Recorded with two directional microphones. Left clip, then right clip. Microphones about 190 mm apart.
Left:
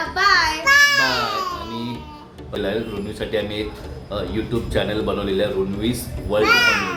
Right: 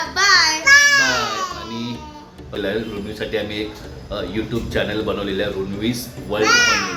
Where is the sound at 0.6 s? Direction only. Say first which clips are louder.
Right 2 dB; 5° left (ahead or behind).